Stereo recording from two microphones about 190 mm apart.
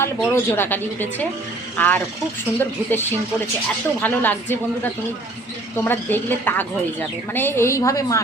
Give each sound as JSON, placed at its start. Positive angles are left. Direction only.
{"t": 0.0, "sound": "speech", "side_deg": 10}